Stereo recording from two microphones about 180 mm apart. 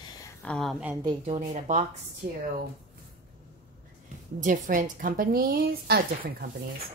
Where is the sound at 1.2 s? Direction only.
35° right (ahead or behind).